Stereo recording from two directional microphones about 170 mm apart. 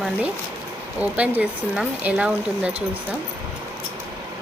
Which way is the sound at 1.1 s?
10° right (ahead or behind).